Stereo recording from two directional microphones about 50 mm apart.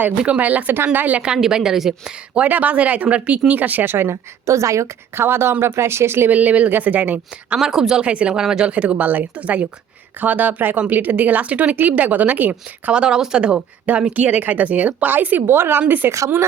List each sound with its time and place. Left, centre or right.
0.3 s speech: right
1.4 s speech: centre
2.4 s speech: right
3.9 s a woman's voice: right
4.4 s a woman's voice: right
5.2 s speech: right
6.3 s speech: right
7.6 s speech: centre
8.0 s speech: right
8.3 s speech: centre
8.7 s speech: right
12.9 s speech: centre
14.0 s speech: right
15.4 s a woman's voice: right